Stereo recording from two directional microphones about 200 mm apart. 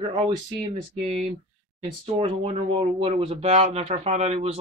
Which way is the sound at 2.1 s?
30° right (ahead or behind).